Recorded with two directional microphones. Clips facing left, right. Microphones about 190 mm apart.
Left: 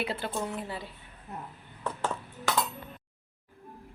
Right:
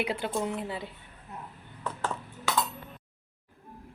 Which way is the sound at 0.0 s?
15° right (ahead or behind).